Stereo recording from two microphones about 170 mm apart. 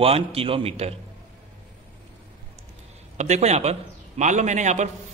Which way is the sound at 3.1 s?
40° right (ahead or behind).